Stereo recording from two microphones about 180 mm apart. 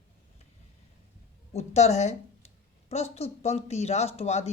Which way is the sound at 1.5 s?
35° left (ahead or behind).